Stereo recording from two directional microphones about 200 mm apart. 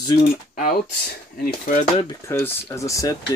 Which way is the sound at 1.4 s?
40° left (ahead or behind).